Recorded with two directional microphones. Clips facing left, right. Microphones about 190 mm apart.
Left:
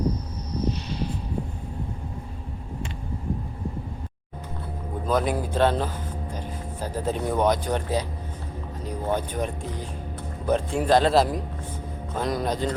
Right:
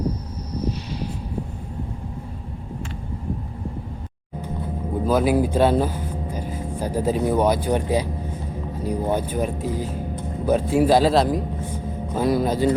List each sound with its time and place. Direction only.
5.0 s speech: 5° right (ahead or behind)